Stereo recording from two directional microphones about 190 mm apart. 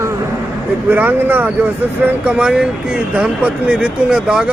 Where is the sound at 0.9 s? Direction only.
10° right (ahead or behind).